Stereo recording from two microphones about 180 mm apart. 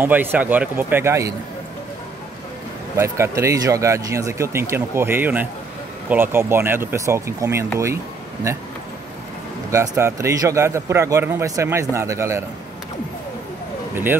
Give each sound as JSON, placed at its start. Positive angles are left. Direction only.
{"t": 0.0, "sound": "a man's voice", "side_deg": -10}
{"t": 3.0, "sound": "a man's voice", "side_deg": -15}
{"t": 9.7, "sound": "a man's voice", "side_deg": -15}